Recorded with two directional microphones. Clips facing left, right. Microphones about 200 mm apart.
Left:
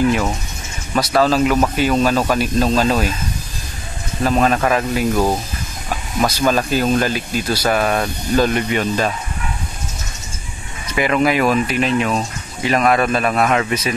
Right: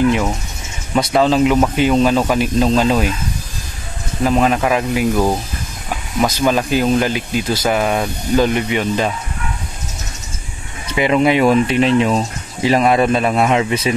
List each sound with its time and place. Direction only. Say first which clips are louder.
0.9 s speech: right 2 dB; 20° right (ahead or behind)
4.2 s speech: right 1 dB; 15° right (ahead or behind)
5.1 s speech: even; centre (ahead or behind)
6.4 s speech: right 1 dB; 15° right (ahead or behind)
10.9 s speech: right 2 dB; 25° right (ahead or behind)